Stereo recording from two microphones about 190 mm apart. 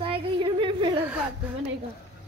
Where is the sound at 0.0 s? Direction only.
25° right (ahead or behind).